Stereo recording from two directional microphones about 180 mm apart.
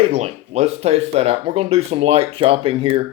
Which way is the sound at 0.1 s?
35° right (ahead or behind).